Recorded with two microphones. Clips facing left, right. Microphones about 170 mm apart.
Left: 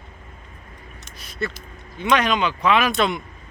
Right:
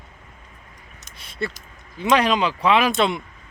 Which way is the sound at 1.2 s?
30° right (ahead or behind).